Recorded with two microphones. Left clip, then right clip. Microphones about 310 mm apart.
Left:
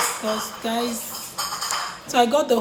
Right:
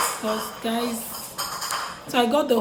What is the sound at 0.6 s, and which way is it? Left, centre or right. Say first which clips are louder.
Speech: left 2 dB; centre.